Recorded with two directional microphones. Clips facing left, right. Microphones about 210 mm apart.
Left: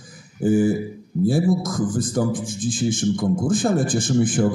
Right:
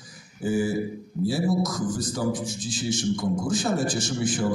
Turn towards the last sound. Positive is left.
turn(degrees=50)  # may be behind; listen again after turning